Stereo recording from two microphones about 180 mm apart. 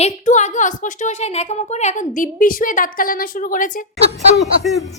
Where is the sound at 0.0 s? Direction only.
40° left (ahead or behind).